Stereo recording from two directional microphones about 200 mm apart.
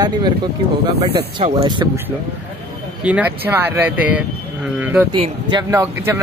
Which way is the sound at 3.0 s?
5° right (ahead or behind).